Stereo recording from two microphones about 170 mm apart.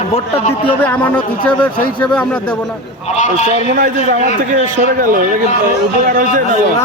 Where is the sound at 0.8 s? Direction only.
10° left (ahead or behind).